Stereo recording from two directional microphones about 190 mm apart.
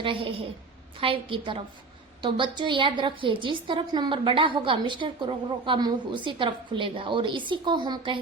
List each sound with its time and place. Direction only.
0.0 s a woman's voice: 25° right (ahead or behind)